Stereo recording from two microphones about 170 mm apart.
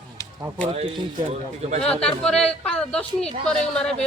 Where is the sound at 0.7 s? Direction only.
30° right (ahead or behind).